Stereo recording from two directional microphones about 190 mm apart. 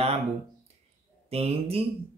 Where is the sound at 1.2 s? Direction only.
30° right (ahead or behind).